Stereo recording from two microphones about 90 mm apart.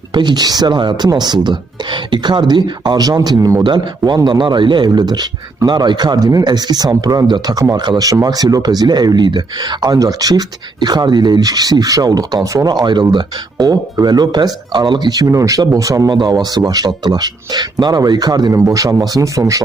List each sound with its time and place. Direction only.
0.1 s speech: 55° right (ahead or behind)
3.6 s a man's voice: 55° right (ahead or behind)
12.8 s speech: 55° right (ahead or behind)
18.5 s speech: 35° right (ahead or behind)